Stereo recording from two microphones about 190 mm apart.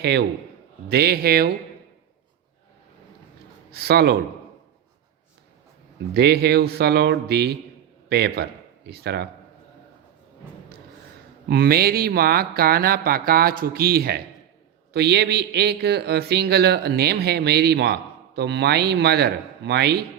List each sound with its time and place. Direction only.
0.0 s speech: 60° right (ahead or behind)
3.7 s speech: 60° right (ahead or behind)
6.1 s speech: 60° right (ahead or behind)
11.4 s speech: 55° right (ahead or behind)